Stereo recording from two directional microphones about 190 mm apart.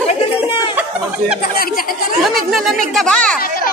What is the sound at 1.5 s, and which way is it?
Speech, 50° left (ahead or behind).